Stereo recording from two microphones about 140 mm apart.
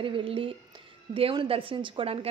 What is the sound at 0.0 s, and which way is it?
A woman's voice, 40° right (ahead or behind).